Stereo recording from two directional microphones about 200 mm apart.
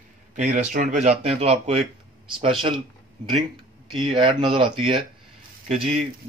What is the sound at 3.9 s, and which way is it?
Speech, 25° right (ahead or behind).